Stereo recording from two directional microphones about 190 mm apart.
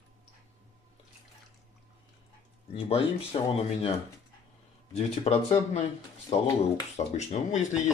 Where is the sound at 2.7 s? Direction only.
30° left (ahead or behind).